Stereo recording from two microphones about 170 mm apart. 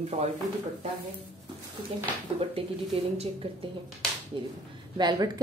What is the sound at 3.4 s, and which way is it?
A woman's voice, 35° right (ahead or behind).